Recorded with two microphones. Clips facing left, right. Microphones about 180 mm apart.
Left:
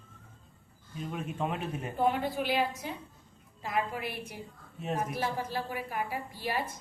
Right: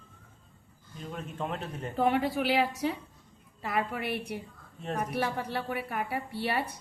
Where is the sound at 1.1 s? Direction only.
10° left (ahead or behind).